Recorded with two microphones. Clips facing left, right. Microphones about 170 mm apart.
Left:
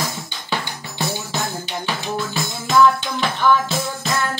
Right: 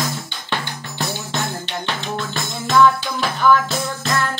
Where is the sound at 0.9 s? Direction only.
10° left (ahead or behind).